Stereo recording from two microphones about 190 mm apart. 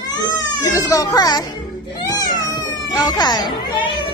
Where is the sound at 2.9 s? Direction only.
20° left (ahead or behind).